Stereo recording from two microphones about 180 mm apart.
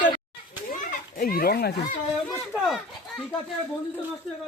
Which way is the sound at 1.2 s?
55° left (ahead or behind).